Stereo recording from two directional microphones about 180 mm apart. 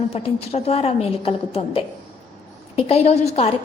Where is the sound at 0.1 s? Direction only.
35° left (ahead or behind).